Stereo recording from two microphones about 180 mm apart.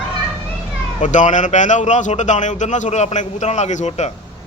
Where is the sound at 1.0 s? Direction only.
45° left (ahead or behind).